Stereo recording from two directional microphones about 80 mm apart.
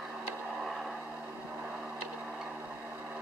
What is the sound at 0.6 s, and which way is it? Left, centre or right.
Vehicle, centre.